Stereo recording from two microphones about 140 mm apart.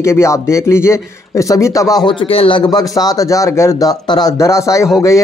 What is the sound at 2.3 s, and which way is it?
Speech, 40° left (ahead or behind).